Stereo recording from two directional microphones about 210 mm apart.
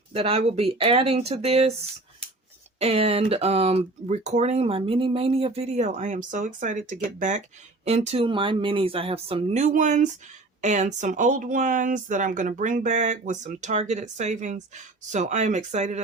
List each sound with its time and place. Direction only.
0.1 s speech: 30° right (ahead or behind)
2.7 s speech: 30° right (ahead or behind)